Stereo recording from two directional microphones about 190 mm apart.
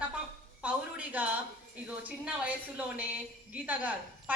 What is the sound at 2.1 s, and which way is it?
A woman's voice, 10° right (ahead or behind).